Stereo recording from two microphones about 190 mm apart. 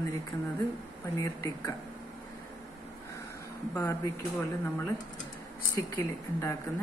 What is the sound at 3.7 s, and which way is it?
Speech, 15° left (ahead or behind).